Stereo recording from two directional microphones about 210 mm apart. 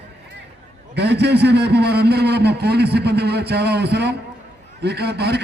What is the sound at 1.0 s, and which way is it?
A man's voice, 50° right (ahead or behind).